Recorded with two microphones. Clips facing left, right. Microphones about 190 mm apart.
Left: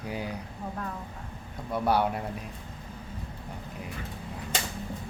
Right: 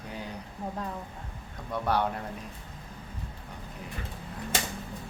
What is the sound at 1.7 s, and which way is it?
Speech, 10° left (ahead or behind).